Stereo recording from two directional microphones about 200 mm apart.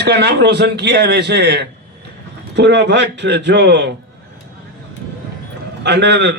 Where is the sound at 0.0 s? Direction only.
55° right (ahead or behind).